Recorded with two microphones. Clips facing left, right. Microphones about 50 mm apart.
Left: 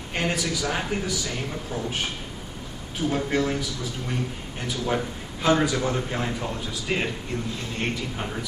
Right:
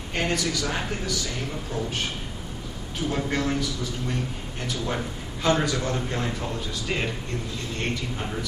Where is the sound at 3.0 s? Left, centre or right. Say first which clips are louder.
Left 2 dB; centre.